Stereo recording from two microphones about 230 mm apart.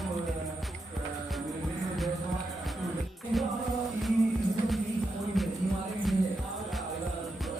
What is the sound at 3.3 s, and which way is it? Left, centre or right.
Music, centre.